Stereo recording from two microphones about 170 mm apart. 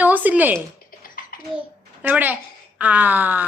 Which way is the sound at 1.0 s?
55° left (ahead or behind).